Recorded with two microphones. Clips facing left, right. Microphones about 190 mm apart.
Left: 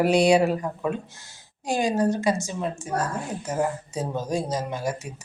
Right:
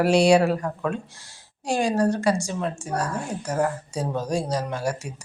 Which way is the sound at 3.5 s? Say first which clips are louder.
Right 1 dB; centre (ahead or behind).